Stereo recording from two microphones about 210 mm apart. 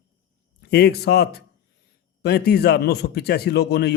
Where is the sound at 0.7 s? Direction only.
50° left (ahead or behind).